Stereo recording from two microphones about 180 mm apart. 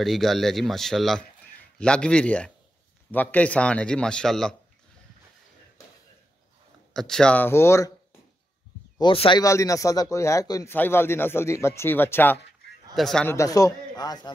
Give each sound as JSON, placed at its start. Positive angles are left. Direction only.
{"t": 0.0, "sound": "speech", "side_deg": 0}
{"t": 6.9, "sound": "a man's voice", "side_deg": 0}
{"t": 8.9, "sound": "a man's voice", "side_deg": 30}
{"t": 9.4, "sound": "a man's voice", "side_deg": 20}
{"t": 13.3, "sound": "a man's voice", "side_deg": 20}